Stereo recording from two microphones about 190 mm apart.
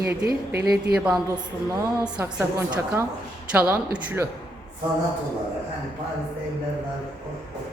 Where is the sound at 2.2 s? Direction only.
10° right (ahead or behind).